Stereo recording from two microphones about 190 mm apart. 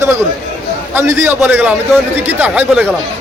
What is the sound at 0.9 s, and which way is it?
A man's voice, 15° right (ahead or behind).